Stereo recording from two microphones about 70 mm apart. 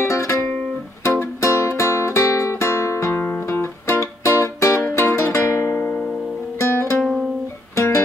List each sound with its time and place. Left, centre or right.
0.0 s music: left
6.6 s music: left